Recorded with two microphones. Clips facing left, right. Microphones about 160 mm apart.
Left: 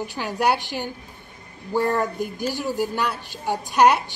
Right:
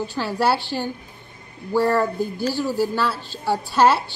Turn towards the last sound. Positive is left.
turn(degrees=15)  # may be behind; listen again after turning